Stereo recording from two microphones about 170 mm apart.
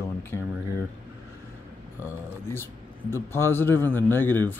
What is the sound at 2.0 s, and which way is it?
Speech, 15° left (ahead or behind).